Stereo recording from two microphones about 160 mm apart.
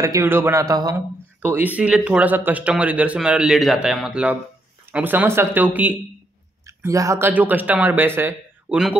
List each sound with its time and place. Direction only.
0.0 s speech: 20° right (ahead or behind)
1.4 s speech: 10° right (ahead or behind)